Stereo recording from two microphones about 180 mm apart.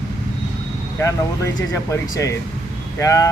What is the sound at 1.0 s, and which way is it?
Speech, 15° left (ahead or behind).